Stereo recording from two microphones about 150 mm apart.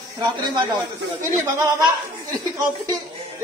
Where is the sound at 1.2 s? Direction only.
25° right (ahead or behind).